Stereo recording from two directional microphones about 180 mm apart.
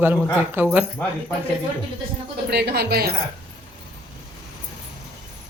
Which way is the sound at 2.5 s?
65° right (ahead or behind).